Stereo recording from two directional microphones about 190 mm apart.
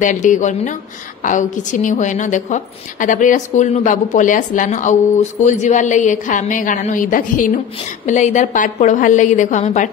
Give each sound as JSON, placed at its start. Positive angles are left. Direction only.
{"t": 0.0, "sound": "a woman's voice", "side_deg": 40}